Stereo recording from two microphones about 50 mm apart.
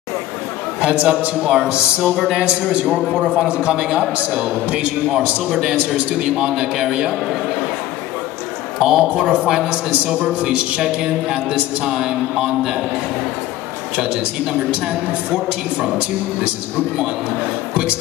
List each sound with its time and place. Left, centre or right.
0.7 s a man's voice: right
8.8 s a man's voice: centre
10.8 s a man's voice: centre
13.9 s a man's voice: centre